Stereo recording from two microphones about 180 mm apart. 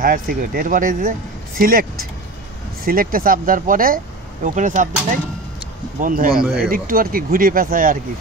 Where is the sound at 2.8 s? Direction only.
55° right (ahead or behind).